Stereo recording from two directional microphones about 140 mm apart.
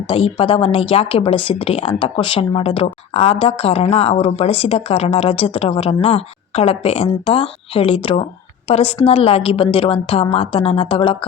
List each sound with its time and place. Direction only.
0.1 s a woman's voice: 40° left (ahead or behind)